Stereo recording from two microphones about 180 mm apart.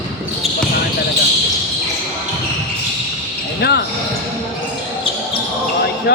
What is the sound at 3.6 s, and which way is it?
Speech, 65° left (ahead or behind).